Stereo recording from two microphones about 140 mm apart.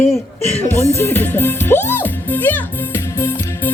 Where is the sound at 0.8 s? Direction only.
15° left (ahead or behind).